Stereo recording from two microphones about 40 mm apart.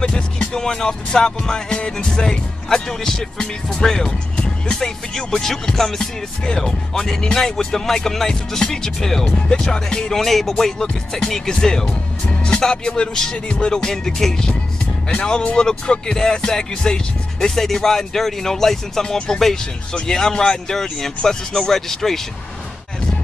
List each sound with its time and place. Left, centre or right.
0.0 s music: centre
10.1 s music: centre
12.3 s speech: left
13.1 s music: centre